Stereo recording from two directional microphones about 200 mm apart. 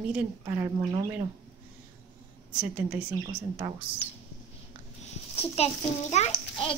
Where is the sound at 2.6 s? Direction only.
5° right (ahead or behind).